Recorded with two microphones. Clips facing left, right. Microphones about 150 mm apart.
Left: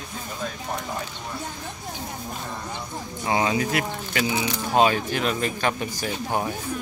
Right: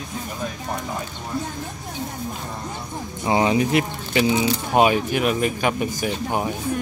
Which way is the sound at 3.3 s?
20° right (ahead or behind).